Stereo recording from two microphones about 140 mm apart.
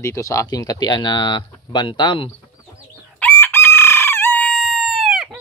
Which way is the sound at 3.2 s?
15° left (ahead or behind).